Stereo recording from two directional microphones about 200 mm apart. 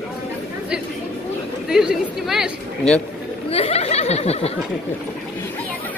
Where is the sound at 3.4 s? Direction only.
30° left (ahead or behind).